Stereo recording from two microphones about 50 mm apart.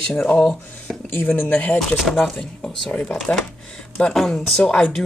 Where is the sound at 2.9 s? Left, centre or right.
Left.